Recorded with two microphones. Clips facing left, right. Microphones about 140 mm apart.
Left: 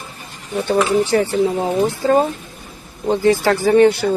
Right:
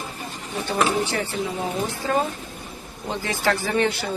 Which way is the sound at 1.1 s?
35° left (ahead or behind).